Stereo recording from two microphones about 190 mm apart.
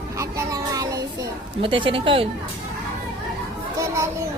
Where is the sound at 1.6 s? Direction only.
25° right (ahead or behind).